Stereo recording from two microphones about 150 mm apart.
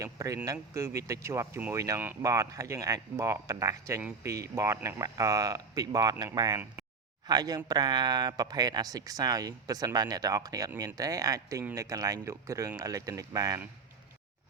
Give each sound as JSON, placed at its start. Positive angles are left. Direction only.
{"t": 0.0, "sound": "speech", "side_deg": -25}